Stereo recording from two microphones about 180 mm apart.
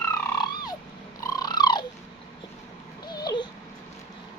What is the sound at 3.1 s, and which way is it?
Dog, 20° left (ahead or behind).